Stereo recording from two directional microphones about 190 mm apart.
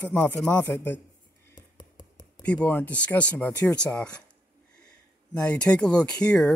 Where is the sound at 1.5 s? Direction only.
20° left (ahead or behind).